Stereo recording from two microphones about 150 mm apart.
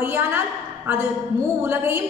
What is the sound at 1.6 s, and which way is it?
Speech, 15° right (ahead or behind).